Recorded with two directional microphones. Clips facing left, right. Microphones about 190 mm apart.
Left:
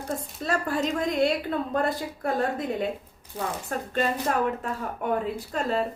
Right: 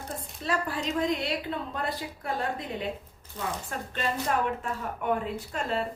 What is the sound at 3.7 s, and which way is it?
Speech, 45° left (ahead or behind).